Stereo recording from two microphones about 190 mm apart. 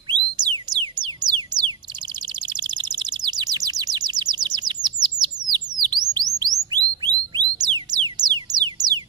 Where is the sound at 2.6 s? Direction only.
20° right (ahead or behind).